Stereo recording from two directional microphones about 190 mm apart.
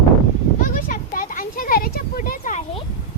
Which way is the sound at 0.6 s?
45° left (ahead or behind).